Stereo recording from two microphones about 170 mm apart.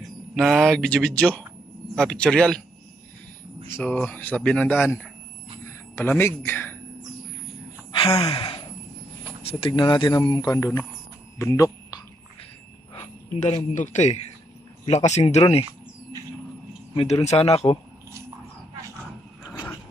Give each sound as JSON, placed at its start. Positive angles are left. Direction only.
{"t": 0.4, "sound": "speech", "side_deg": 0}
{"t": 3.8, "sound": "speech", "side_deg": 10}
{"t": 8.3, "sound": "a sound", "side_deg": 30}
{"t": 9.7, "sound": "speech", "side_deg": 25}
{"t": 11.3, "sound": "a sound", "side_deg": 20}
{"t": 13.4, "sound": "speech", "side_deg": 40}
{"t": 16.9, "sound": "speech", "side_deg": 30}